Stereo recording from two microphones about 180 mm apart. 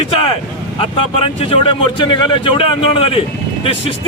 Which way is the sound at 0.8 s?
30° left (ahead or behind).